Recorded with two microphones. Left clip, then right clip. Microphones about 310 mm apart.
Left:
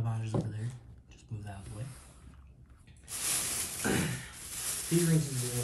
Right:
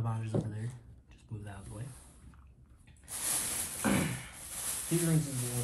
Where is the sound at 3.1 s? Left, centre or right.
Centre.